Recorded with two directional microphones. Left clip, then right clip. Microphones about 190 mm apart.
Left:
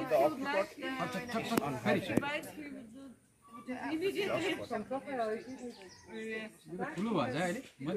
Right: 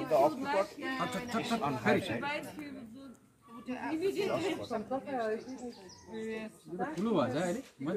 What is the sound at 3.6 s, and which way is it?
Speech, 25° right (ahead or behind).